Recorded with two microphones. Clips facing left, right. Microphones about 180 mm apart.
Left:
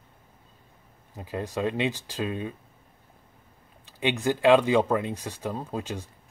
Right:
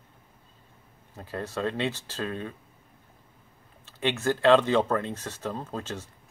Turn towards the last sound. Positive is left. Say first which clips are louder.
# left 2 dB
turn(degrees=15)  # may be behind; listen again after turning